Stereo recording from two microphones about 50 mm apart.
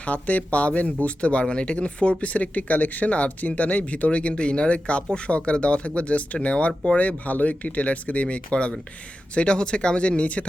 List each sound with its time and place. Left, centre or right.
0.0 s speech: left